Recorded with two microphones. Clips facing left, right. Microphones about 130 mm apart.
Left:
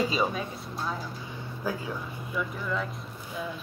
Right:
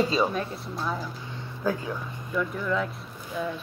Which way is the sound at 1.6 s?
10° left (ahead or behind).